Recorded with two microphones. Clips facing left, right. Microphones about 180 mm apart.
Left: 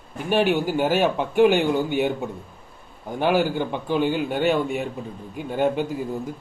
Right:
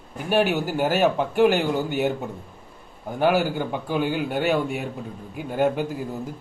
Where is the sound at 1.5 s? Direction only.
5° right (ahead or behind).